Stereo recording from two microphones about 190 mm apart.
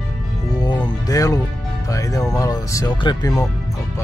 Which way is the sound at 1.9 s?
15° left (ahead or behind).